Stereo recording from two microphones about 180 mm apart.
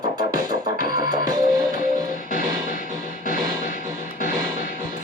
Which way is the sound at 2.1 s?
50° left (ahead or behind).